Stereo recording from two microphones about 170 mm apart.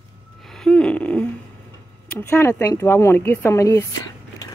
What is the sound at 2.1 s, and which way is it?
Speech, 15° left (ahead or behind).